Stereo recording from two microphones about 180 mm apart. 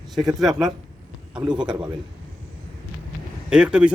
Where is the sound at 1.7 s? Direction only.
25° right (ahead or behind).